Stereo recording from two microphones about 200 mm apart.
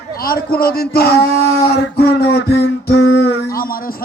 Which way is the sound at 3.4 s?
45° left (ahead or behind).